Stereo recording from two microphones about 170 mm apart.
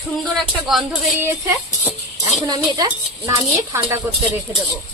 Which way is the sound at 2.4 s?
25° right (ahead or behind).